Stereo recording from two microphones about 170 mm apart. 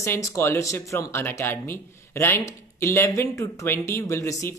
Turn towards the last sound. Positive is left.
turn(degrees=15)  # may be behind; listen again after turning